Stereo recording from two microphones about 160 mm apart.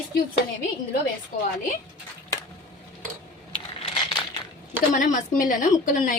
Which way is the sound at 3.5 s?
35° left (ahead or behind).